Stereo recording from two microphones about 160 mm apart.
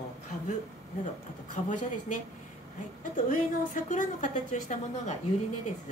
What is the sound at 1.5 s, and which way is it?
A woman's voice, 50° left (ahead or behind).